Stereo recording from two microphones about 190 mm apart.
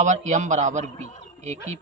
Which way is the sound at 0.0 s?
40° right (ahead or behind).